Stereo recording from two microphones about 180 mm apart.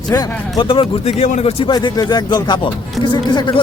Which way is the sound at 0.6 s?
30° left (ahead or behind).